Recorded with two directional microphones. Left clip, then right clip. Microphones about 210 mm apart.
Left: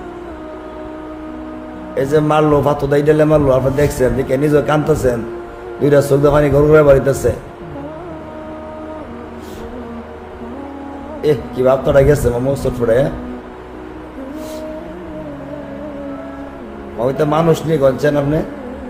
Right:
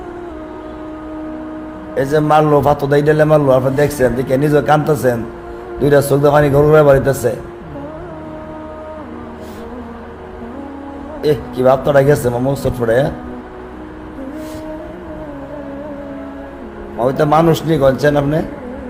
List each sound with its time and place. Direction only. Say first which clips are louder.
2.0 s a man's voice: right 1 dB; 15° right (ahead or behind)
11.2 s a man's voice: even; 15° right (ahead or behind)
17.0 s a man's voice: right 3 dB; 20° right (ahead or behind)